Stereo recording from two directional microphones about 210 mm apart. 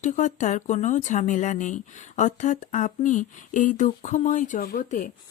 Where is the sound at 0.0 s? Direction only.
35° left (ahead or behind).